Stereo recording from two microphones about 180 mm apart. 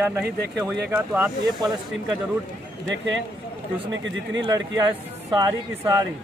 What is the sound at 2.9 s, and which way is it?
Speech, 90° right.